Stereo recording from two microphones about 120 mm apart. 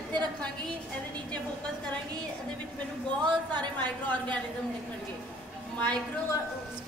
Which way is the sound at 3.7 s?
15° left (ahead or behind).